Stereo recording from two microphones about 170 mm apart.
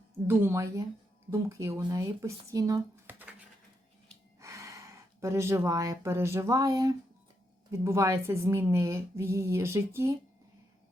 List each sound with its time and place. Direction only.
0.3 s speech: 15° right (ahead or behind)
4.4 s speech: 15° right (ahead or behind)